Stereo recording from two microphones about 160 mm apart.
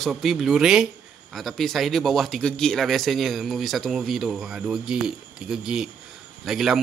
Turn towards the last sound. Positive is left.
turn(degrees=0)  # may be behind; listen again after turning